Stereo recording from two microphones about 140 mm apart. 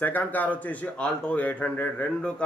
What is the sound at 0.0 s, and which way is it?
Speech, 10° left (ahead or behind).